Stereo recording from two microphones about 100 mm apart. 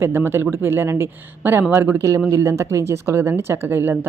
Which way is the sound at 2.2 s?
30° right (ahead or behind).